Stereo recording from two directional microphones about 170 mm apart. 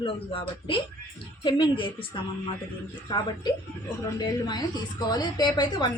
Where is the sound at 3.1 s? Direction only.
25° left (ahead or behind).